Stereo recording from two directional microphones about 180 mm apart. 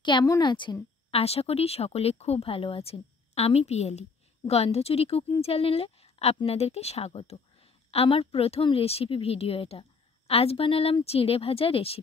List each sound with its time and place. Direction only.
0.0 s a woman's voice: 20° left (ahead or behind)